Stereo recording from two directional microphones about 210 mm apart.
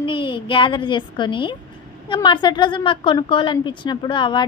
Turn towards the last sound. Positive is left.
turn(degrees=20)  # may be behind; listen again after turning